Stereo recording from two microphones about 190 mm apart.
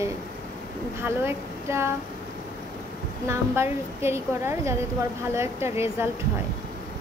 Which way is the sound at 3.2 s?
15° right (ahead or behind).